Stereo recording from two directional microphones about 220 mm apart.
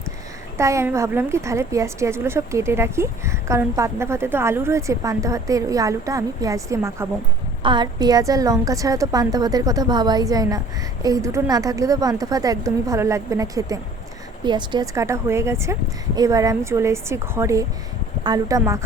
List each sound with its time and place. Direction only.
0.5 s a woman's voice: 15° right (ahead or behind)